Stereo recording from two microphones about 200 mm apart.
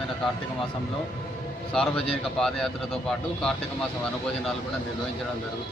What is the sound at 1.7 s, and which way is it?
Speech, 5° left (ahead or behind).